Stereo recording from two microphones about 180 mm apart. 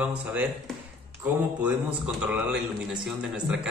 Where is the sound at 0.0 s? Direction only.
5° right (ahead or behind).